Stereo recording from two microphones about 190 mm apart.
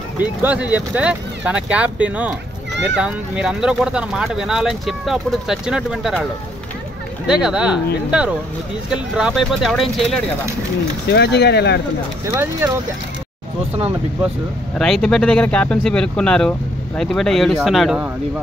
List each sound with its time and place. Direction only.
0.2 s speech: 10° right (ahead or behind)
7.2 s speech: 5° right (ahead or behind)
11.1 s speech: 60° left (ahead or behind)
12.4 s speech: 10° right (ahead or behind)
14.8 s speech: 5° left (ahead or behind)